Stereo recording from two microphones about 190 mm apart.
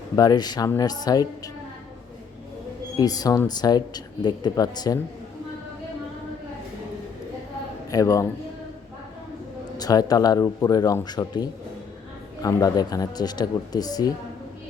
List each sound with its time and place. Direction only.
0.2 s speech: 20° left (ahead or behind)
3.0 s speech: 20° left (ahead or behind)
7.9 s a man's voice: 20° left (ahead or behind)
9.7 s speech: 20° left (ahead or behind)